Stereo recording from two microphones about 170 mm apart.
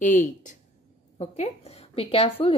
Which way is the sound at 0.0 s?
50° left (ahead or behind).